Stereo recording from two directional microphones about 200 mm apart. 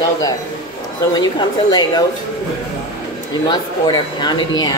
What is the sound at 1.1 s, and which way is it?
Speech, 20° left (ahead or behind).